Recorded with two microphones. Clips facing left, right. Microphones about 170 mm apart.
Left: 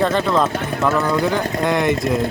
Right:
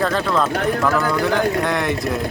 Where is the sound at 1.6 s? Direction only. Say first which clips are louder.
Left 3 dB; centre (ahead or behind).